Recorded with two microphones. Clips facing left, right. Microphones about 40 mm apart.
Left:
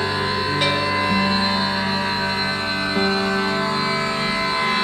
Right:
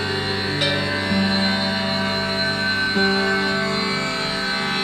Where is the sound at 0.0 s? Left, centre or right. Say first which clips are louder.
Left 2 dB; left.